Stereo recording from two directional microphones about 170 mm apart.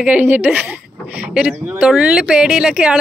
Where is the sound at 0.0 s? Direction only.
10° right (ahead or behind).